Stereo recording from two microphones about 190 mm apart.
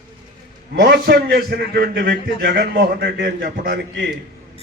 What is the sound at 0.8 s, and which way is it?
A man's voice, 60° right (ahead or behind).